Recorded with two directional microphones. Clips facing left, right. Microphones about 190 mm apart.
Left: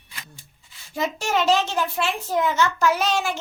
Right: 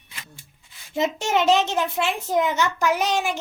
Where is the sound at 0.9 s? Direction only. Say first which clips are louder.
Right 2 dB; 20° right (ahead or behind).